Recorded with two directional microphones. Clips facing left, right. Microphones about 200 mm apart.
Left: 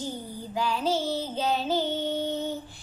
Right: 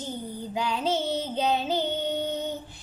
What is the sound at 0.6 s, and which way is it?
Child singing, 20° right (ahead or behind).